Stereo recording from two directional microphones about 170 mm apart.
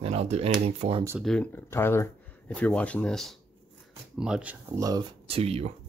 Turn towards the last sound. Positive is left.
turn(degrees=-35)  # may be behind; listen again after turning